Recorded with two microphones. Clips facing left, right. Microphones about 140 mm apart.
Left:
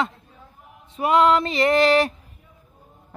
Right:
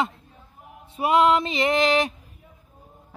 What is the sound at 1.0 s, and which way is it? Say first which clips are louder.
Music: left 1 dB; 25° right (ahead or behind).